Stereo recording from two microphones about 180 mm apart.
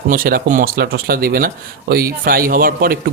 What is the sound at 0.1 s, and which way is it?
Speech, 55° right (ahead or behind).